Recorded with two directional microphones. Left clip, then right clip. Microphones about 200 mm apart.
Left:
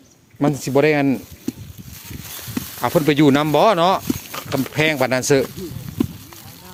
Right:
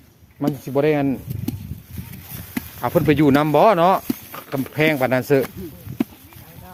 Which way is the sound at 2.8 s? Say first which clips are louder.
Left 1 dB; 15° left (ahead or behind).